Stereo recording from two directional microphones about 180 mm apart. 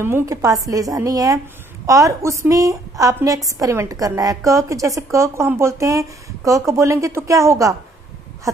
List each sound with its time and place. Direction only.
0.0 s a woman's voice: 15° right (ahead or behind)